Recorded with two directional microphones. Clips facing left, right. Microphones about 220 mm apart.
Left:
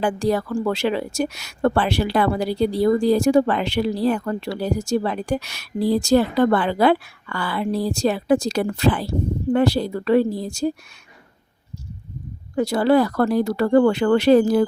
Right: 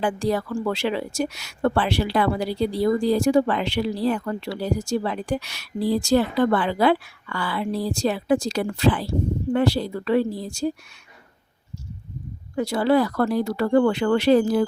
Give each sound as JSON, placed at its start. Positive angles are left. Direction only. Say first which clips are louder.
{"t": 0.0, "sound": "a woman's voice", "louder": "left 2 dB", "side_deg": 45}
{"t": 12.5, "sound": "a woman's voice", "louder": "left 3 dB", "side_deg": 45}